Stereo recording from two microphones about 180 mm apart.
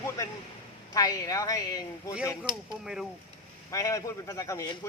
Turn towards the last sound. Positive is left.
turn(degrees=20)  # may be behind; listen again after turning